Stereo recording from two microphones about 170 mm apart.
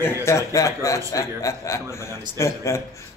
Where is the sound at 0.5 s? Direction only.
20° left (ahead or behind).